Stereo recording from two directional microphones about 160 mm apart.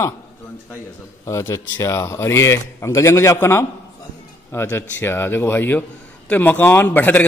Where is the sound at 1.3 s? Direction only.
20° left (ahead or behind).